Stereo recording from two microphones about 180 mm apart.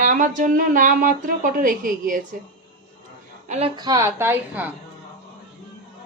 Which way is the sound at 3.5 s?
35° right (ahead or behind).